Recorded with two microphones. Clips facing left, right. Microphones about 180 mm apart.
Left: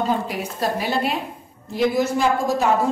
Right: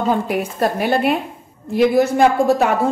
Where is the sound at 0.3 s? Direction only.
60° right (ahead or behind).